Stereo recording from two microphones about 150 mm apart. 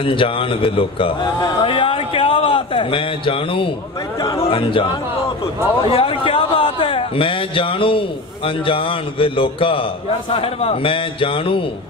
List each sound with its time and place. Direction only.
0.0 s a man's voice: 35° left (ahead or behind)
5.9 s a man's voice: 40° left (ahead or behind)